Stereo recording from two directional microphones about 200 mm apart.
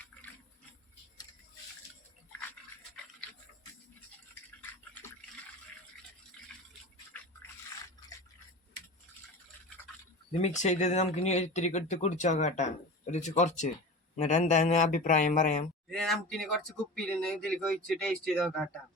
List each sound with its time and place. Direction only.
10.4 s speech: 35° left (ahead or behind)
15.9 s speech: centre (ahead or behind)